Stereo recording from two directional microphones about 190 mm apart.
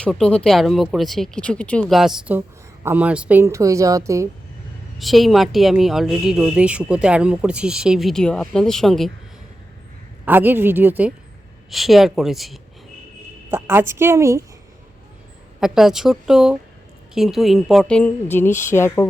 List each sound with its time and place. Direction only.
0.0 s a woman's voice: 5° left (ahead or behind); by 4.3 s 15° right (ahead or behind)
4.9 s a woman's voice: centre (ahead or behind)
10.2 s a woman's voice: 10° right (ahead or behind)
13.5 s speech: 10° right (ahead or behind)
15.6 s a woman's voice: centre (ahead or behind); by 19.0 s 15° left (ahead or behind)